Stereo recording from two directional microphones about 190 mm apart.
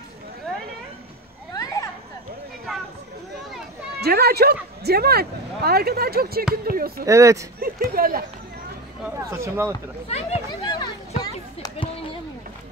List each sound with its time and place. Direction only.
1.5 s a sound: 20° left (ahead or behind)
4.0 s speech: 55° right (ahead or behind)
7.1 s speech: 15° right (ahead or behind)
7.6 s speech: 50° right (ahead or behind)
9.0 s speech: 15° right (ahead or behind)
10.0 s a sound: 35° left (ahead or behind)